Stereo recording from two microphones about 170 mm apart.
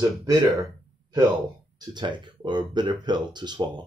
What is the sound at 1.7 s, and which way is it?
Speech, 25° right (ahead or behind).